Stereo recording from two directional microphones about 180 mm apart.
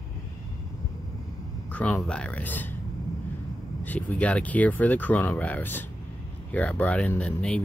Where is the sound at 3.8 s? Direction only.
10° left (ahead or behind).